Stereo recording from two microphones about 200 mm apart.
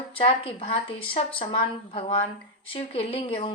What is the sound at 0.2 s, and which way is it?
A woman's voice, 25° left (ahead or behind).